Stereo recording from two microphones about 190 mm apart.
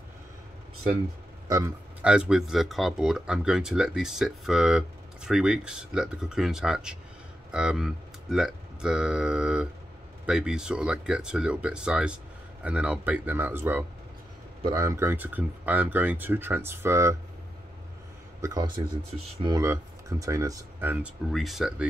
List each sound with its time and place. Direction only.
1.5 s speech: 10° right (ahead or behind)
18.4 s a man's voice: 20° right (ahead or behind); by 21.8 s 5° right (ahead or behind)